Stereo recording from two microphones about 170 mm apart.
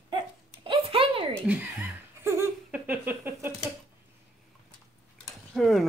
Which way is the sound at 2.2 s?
15° right (ahead or behind).